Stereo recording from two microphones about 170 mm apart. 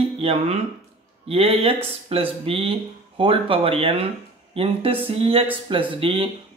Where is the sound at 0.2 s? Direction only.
35° right (ahead or behind).